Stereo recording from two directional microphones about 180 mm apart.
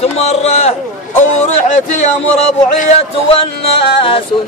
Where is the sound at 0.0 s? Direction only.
35° left (ahead or behind).